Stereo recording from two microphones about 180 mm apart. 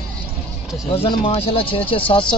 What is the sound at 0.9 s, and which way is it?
Speech, 30° left (ahead or behind).